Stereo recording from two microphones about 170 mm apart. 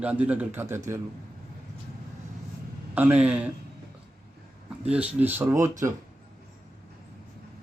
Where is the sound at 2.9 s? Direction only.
10° right (ahead or behind).